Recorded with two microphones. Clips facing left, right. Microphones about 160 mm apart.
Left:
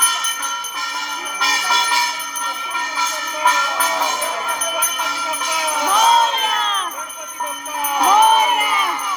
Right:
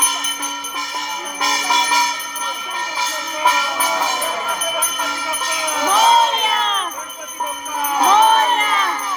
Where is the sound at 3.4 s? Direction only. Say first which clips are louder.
Even; 10° right (ahead or behind).